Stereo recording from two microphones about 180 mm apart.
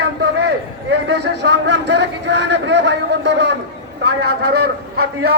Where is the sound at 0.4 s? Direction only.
70° right (ahead or behind).